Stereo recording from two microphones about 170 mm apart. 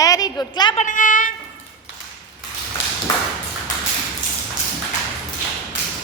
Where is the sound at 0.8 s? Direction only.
50° left (ahead or behind).